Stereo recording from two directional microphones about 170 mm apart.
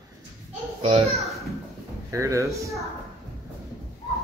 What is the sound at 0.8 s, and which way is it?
Speech, 35° right (ahead or behind).